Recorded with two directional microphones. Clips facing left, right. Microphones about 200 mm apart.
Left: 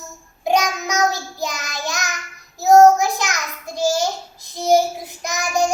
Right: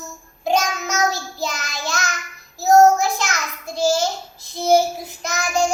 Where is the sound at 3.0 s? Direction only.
15° left (ahead or behind).